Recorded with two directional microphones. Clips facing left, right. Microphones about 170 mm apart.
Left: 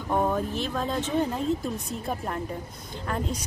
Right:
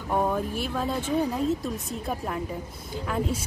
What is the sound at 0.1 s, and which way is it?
A woman's voice, 5° right (ahead or behind).